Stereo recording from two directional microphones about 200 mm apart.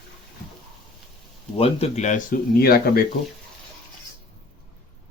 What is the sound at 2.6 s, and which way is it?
Speech, 50° left (ahead or behind).